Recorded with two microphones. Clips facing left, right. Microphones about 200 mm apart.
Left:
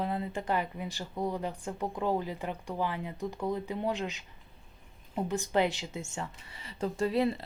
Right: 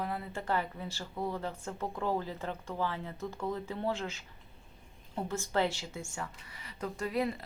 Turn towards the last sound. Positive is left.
turn(degrees=30)  # may be behind; listen again after turning